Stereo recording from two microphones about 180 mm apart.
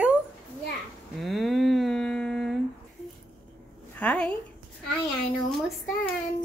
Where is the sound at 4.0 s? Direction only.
5° left (ahead or behind).